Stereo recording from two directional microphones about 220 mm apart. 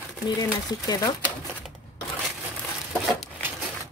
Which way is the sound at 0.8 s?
15° left (ahead or behind).